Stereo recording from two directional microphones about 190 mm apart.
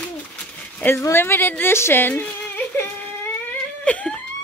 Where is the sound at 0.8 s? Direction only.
10° left (ahead or behind).